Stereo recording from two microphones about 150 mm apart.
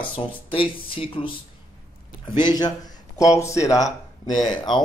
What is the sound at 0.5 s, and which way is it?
Speech, 35° left (ahead or behind).